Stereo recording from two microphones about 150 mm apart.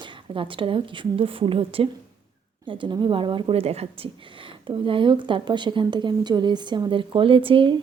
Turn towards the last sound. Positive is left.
turn(degrees=-35)  # may be behind; listen again after turning